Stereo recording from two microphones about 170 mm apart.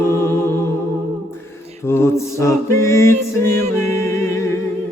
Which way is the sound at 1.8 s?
15° left (ahead or behind).